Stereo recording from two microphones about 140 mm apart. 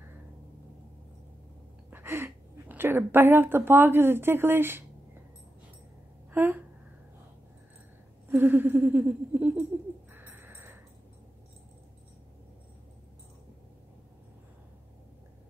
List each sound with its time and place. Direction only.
1.9 s a woman's voice: 15° right (ahead or behind)
6.3 s speech: 15° right (ahead or behind)
8.3 s a sound: 15° right (ahead or behind)